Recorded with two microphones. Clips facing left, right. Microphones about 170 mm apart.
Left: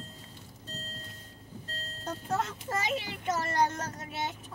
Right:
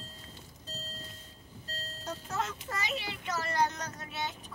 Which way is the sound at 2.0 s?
50° left (ahead or behind).